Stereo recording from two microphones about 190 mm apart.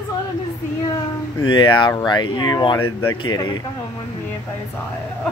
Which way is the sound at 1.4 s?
25° left (ahead or behind).